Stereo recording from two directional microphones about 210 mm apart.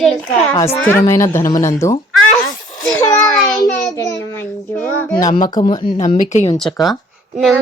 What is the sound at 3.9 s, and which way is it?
Speech, 15° left (ahead or behind).